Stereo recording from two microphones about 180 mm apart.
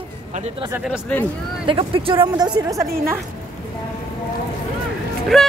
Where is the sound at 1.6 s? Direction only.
30° right (ahead or behind).